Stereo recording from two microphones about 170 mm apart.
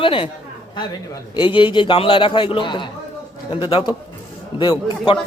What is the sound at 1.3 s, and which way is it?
Speech, 30° left (ahead or behind).